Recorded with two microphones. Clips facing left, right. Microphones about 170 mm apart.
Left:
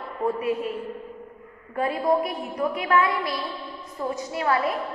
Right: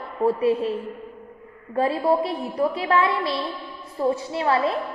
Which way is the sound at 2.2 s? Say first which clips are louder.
Right 3 dB; 30° right (ahead or behind).